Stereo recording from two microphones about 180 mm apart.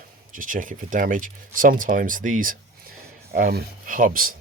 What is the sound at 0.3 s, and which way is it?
Speech, 50° right (ahead or behind).